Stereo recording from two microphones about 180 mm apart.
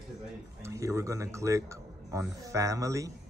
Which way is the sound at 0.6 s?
15° right (ahead or behind).